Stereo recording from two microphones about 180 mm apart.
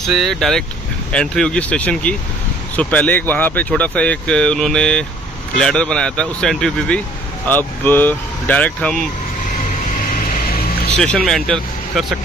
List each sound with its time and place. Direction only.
0.0 s speech: centre (ahead or behind)
9.9 s vehicle: 55° left (ahead or behind)
11.0 s speech: 5° left (ahead or behind)